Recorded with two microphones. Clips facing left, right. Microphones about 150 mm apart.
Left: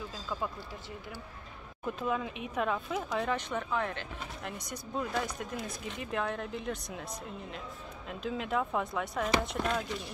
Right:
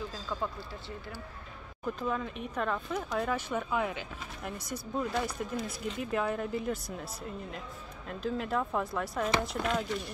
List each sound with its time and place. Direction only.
0.3 s speech: 5° left (ahead or behind)
2.0 s speech: 5° left (ahead or behind)